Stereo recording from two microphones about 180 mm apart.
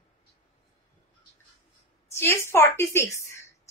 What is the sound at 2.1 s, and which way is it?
A woman's voice, 15° left (ahead or behind).